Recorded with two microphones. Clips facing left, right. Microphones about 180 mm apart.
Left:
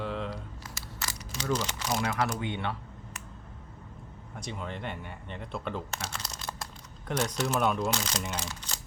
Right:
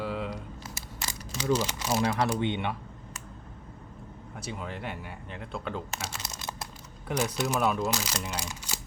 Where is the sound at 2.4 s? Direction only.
20° right (ahead or behind).